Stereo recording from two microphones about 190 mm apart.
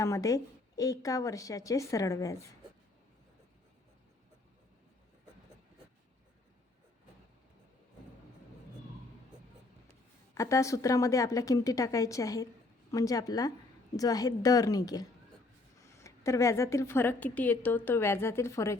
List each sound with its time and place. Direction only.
0.0 s a woman's voice: 15° left (ahead or behind)
10.3 s a woman's voice: 15° left (ahead or behind)